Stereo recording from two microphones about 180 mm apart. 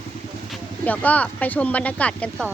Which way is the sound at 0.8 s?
10° left (ahead or behind).